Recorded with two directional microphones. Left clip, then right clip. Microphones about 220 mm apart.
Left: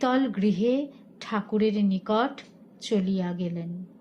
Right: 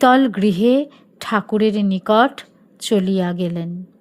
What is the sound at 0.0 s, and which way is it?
A woman's voice, 50° right (ahead or behind).